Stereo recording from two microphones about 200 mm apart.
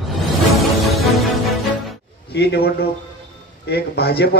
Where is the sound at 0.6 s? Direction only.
Centre (ahead or behind).